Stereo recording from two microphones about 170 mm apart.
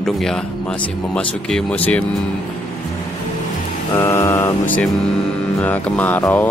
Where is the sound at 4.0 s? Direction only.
15° left (ahead or behind).